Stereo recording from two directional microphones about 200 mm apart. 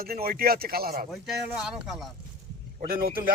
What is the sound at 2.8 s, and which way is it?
Speech, 50° right (ahead or behind).